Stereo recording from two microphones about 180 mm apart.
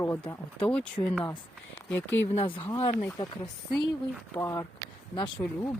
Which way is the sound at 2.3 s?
35° left (ahead or behind).